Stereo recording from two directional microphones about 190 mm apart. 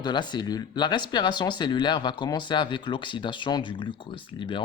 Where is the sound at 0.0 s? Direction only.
25° left (ahead or behind).